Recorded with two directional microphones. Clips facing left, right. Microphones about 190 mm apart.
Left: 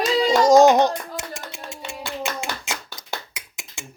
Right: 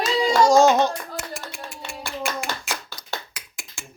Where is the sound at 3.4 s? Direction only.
20° left (ahead or behind).